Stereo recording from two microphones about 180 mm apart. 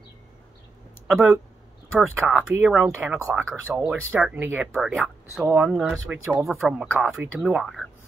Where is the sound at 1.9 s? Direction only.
10° right (ahead or behind).